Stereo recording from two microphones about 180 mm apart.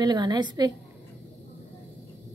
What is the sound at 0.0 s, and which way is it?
Speech, 25° right (ahead or behind).